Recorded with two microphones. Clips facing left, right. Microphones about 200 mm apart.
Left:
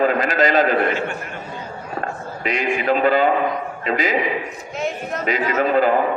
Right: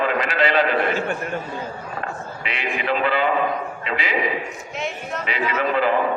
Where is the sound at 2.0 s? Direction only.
45° left (ahead or behind).